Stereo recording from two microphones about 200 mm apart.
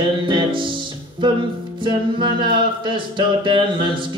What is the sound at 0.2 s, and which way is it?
Music, 25° right (ahead or behind).